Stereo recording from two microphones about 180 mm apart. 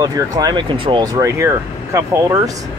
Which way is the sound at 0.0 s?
20° right (ahead or behind).